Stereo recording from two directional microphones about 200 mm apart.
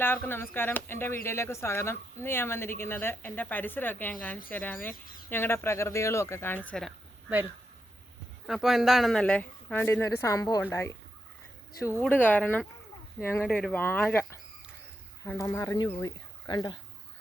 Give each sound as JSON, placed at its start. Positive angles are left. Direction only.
{"t": 0.0, "sound": "speech", "side_deg": 10}
{"t": 8.4, "sound": "speech", "side_deg": 0}
{"t": 11.9, "sound": "speech", "side_deg": 10}